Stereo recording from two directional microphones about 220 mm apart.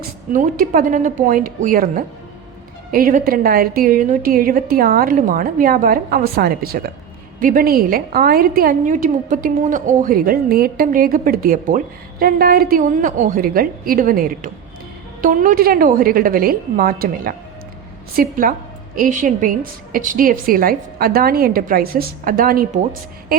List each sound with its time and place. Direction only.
0.3 s a woman's voice: 35° right (ahead or behind)